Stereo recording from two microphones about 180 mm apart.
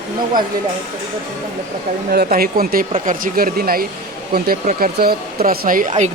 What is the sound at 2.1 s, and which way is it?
Speech, 55° right (ahead or behind).